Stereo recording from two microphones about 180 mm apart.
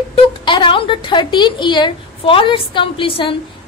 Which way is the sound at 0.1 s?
25° left (ahead or behind).